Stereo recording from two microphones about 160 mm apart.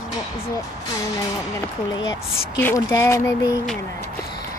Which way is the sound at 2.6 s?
15° left (ahead or behind).